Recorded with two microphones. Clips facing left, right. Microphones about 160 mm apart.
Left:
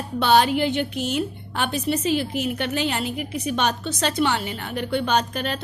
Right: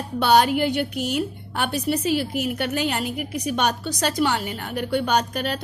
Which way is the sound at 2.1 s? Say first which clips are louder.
Even; 5° right (ahead or behind).